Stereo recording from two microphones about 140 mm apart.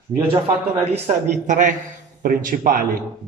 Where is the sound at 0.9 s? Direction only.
60° right (ahead or behind).